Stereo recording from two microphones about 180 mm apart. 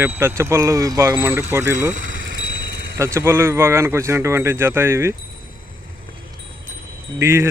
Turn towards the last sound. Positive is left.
turn(degrees=-15)  # may be behind; listen again after turning